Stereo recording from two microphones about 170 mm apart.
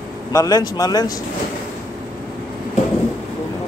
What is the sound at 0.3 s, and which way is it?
Speech, 20° left (ahead or behind).